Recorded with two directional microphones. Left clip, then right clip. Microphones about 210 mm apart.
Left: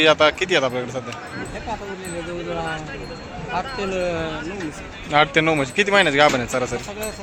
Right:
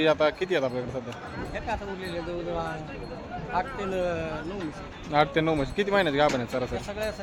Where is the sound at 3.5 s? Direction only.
50° left (ahead or behind).